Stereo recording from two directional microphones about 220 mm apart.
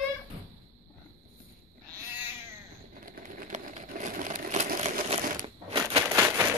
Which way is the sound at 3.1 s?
35° right (ahead or behind).